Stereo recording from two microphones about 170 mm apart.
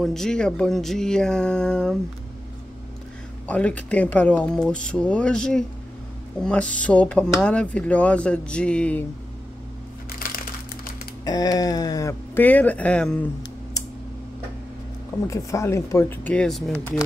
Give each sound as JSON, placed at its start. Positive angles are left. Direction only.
{"t": 0.0, "sound": "speech", "side_deg": 0}
{"t": 3.4, "sound": "speech", "side_deg": 10}
{"t": 10.2, "sound": "crumpling", "side_deg": 55}
{"t": 11.2, "sound": "speech", "side_deg": 20}
{"t": 15.2, "sound": "speech", "side_deg": 15}